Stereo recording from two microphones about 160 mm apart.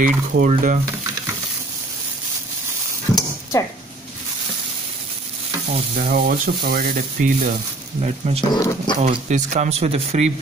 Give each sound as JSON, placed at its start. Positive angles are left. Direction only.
{"t": 0.0, "sound": "speech", "side_deg": -55}
{"t": 5.9, "sound": "speech", "side_deg": -60}
{"t": 8.0, "sound": "speech", "side_deg": -40}
{"t": 8.5, "sound": "speech", "side_deg": 20}
{"t": 9.0, "sound": "speech", "side_deg": -50}